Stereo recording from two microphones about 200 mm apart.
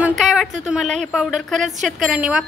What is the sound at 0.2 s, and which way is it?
A woman's voice, centre (ahead or behind).